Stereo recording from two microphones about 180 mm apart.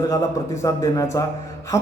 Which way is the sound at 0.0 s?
20° left (ahead or behind).